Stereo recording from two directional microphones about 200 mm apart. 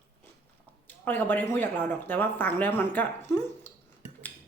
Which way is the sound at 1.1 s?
10° left (ahead or behind).